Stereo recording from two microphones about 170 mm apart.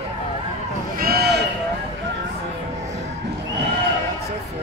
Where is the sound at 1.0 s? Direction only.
65° right (ahead or behind).